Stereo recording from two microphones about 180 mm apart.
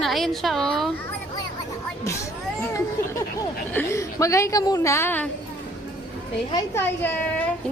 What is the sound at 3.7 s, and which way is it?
A woman's voice, 15° left (ahead or behind).